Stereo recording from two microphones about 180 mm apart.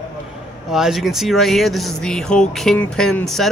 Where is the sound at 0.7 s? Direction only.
Centre (ahead or behind).